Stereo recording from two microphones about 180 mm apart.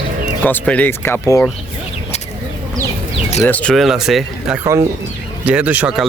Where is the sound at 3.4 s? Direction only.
10° left (ahead or behind).